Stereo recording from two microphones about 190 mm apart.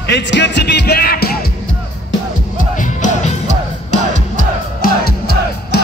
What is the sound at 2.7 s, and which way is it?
Music, 40° left (ahead or behind).